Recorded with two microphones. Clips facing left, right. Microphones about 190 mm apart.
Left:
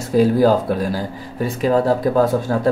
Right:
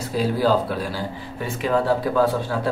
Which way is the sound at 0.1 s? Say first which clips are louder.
Left 6 dB; 45° left (ahead or behind).